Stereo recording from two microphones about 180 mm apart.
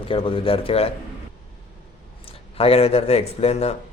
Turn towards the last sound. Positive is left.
turn(degrees=35)  # may be behind; listen again after turning